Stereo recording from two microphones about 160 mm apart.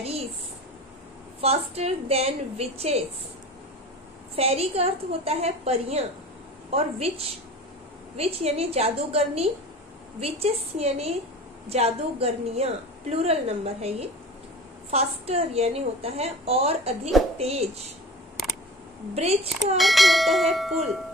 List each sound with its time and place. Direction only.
1.4 s a woman's voice: 40° right (ahead or behind)
4.4 s a woman's voice: 40° right (ahead or behind)
19.1 s a woman's voice: 40° right (ahead or behind)
19.8 s speech: centre (ahead or behind)